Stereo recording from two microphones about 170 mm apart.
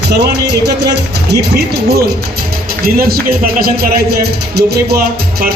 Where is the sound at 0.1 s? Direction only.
75° right (ahead or behind).